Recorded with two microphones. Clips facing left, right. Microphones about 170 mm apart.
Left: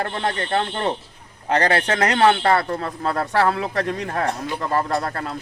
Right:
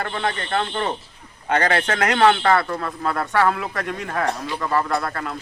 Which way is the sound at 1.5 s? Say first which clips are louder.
Left 1 dB; 35° left (ahead or behind).